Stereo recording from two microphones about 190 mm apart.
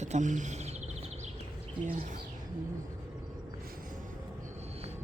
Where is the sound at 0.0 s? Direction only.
40° right (ahead or behind).